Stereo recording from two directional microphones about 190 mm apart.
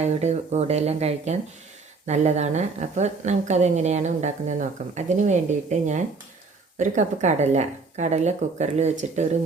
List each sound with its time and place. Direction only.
0.0 s a woman's voice: 35° right (ahead or behind)